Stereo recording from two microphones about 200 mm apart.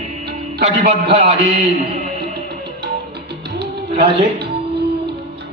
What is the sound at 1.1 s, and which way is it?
Speech, 30° right (ahead or behind).